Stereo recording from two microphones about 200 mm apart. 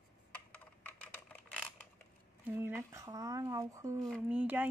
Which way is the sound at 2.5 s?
10° right (ahead or behind).